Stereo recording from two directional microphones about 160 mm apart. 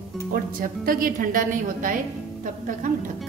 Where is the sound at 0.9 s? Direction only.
60° right (ahead or behind).